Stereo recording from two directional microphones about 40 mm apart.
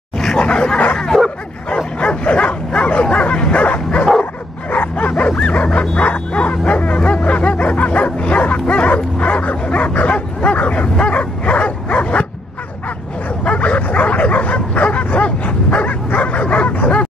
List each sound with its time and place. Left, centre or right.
0.4 s dog: left
2.0 s bow-wow: left
13.4 s bow-wow: left